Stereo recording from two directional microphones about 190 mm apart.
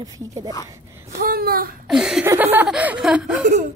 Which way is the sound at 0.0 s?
20° right (ahead or behind).